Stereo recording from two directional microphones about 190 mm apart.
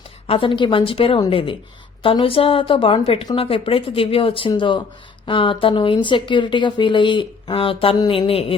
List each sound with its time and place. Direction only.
0.3 s speech: 25° left (ahead or behind)